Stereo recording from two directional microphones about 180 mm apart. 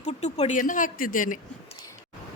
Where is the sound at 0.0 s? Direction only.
40° left (ahead or behind).